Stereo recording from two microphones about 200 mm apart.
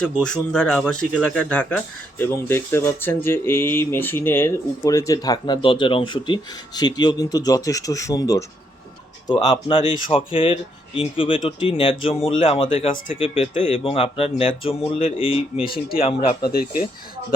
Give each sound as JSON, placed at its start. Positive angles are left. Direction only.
{"t": 0.0, "sound": "speech", "side_deg": 5}
{"t": 12.6, "sound": "speech", "side_deg": 40}
{"t": 13.1, "sound": "speech", "side_deg": 25}
{"t": 15.6, "sound": "speech", "side_deg": 45}
{"t": 16.0, "sound": "speech", "side_deg": 30}